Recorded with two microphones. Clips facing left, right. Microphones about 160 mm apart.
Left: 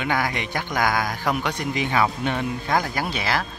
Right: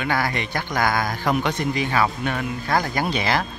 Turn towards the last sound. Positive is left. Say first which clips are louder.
# right 3 dB
turn(degrees=5)  # may be behind; listen again after turning